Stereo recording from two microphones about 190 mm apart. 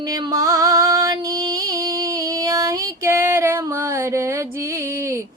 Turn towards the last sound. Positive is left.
turn(degrees=-15)  # may be behind; listen again after turning